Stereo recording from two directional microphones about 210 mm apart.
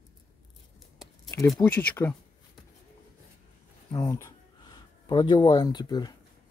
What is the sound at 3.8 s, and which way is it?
Speech, 15° left (ahead or behind).